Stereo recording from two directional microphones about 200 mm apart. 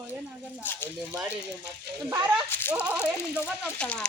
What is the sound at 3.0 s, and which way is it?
Speech, 10° left (ahead or behind).